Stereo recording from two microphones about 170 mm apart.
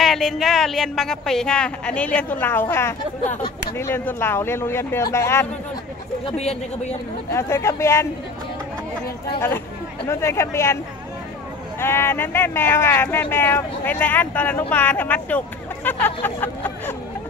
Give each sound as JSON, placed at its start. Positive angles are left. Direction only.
{"t": 0.0, "sound": "speech", "side_deg": 0}
{"t": 6.3, "sound": "speech", "side_deg": 40}
{"t": 7.2, "sound": "speech", "side_deg": 15}
{"t": 10.0, "sound": "speech", "side_deg": 15}
{"t": 11.8, "sound": "speech", "side_deg": 15}